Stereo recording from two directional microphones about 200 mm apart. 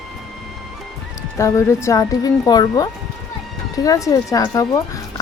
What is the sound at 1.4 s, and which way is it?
Speech, 15° left (ahead or behind).